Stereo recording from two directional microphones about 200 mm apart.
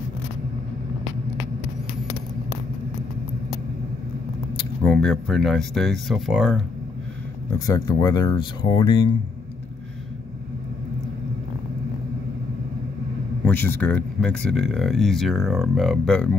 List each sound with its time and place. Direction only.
4.8 s speech: 5° left (ahead or behind)
7.6 s speech: 20° left (ahead or behind)
13.5 s speech: 10° left (ahead or behind)